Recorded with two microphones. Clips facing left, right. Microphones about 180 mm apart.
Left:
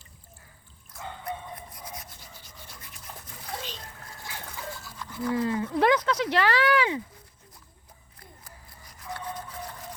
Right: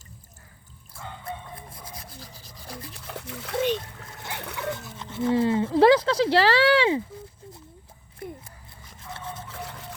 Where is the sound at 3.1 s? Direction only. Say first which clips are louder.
Right 6 dB; 75° right (ahead or behind).